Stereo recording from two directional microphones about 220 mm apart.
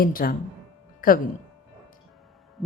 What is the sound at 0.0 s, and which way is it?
Speech, 40° left (ahead or behind).